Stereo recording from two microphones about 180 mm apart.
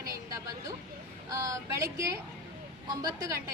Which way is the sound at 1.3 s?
15° right (ahead or behind).